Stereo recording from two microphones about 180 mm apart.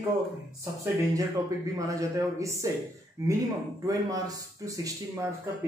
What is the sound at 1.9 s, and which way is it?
Speech, 20° right (ahead or behind).